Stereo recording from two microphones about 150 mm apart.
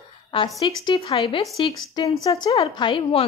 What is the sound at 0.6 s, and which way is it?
A woman's voice, 35° left (ahead or behind).